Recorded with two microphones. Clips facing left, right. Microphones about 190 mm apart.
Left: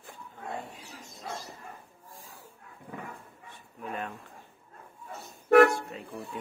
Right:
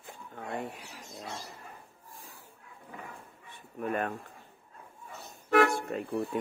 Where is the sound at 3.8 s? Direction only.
55° right (ahead or behind).